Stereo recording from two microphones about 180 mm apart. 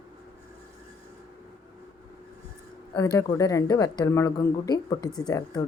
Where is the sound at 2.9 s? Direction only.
20° left (ahead or behind).